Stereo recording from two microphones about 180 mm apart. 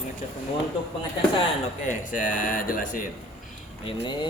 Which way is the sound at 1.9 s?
45° left (ahead or behind).